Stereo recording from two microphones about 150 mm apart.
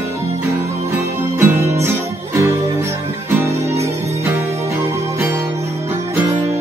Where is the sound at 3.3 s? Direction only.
20° right (ahead or behind).